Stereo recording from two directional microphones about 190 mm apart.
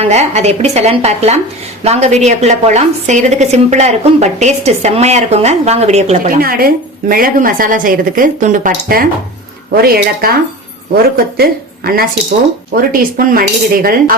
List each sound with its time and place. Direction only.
0.0 s a woman's voice: 35° right (ahead or behind)
9.7 s cutlery: 50° right (ahead or behind)